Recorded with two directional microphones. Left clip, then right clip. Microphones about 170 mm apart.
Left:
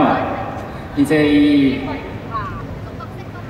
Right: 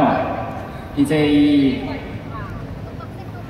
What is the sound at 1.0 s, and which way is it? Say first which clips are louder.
Speech: left 2 dB; 45° left (ahead or behind).